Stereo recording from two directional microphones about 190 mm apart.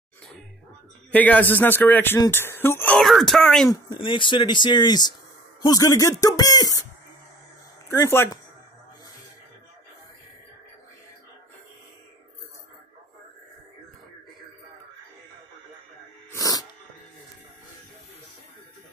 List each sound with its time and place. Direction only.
1.1 s speech: 10° left (ahead or behind)
3.7 s speech: 25° left (ahead or behind)
7.9 s speech: 15° left (ahead or behind)
16.3 s a sound: 20° left (ahead or behind)